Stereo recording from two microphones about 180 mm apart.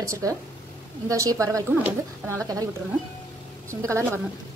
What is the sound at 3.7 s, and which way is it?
Speech, 15° right (ahead or behind).